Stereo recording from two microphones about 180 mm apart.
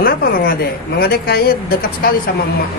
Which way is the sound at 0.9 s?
60° left (ahead or behind).